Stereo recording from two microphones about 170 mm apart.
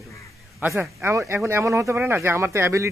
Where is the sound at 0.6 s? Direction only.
15° right (ahead or behind).